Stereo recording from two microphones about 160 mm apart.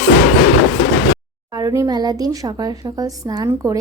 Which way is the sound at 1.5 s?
20° right (ahead or behind).